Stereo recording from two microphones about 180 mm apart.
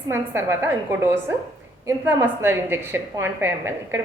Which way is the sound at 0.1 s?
15° right (ahead or behind).